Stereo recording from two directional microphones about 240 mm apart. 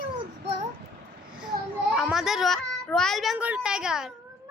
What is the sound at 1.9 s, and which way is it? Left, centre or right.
A child's voice, centre.